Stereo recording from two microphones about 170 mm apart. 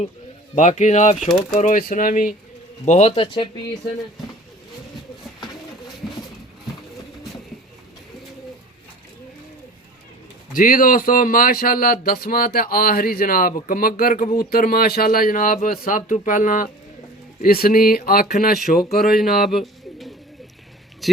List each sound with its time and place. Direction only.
0.5 s speech: 45° left (ahead or behind)
2.8 s speech: 40° left (ahead or behind)
10.5 s speech: 55° left (ahead or behind)
19.1 s speech: centre (ahead or behind)